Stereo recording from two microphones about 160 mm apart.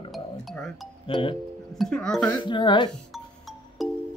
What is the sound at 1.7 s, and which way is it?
Speech, 5° left (ahead or behind).